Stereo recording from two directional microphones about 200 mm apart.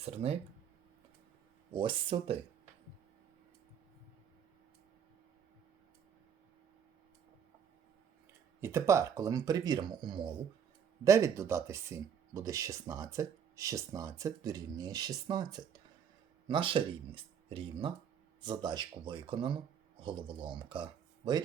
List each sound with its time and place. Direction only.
0.0 s speech: 30° right (ahead or behind)
1.7 s speech: 25° right (ahead or behind)
8.6 s speech: 15° right (ahead or behind)